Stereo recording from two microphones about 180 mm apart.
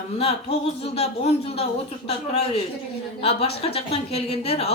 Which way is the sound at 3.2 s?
35° left (ahead or behind).